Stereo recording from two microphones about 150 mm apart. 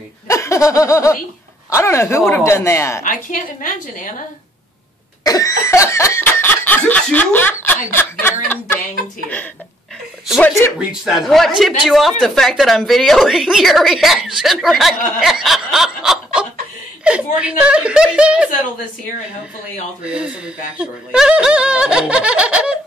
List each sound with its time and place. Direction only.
0.3 s a sound: 20° left (ahead or behind)
1.7 s speech: 20° left (ahead or behind)
3.0 s a woman's voice: 65° left (ahead or behind)
5.2 s cough: 25° left (ahead or behind)
5.7 s speech: 20° left (ahead or behind)
10.8 s speech: 5° right (ahead or behind)
20.0 s speech: 5° right (ahead or behind)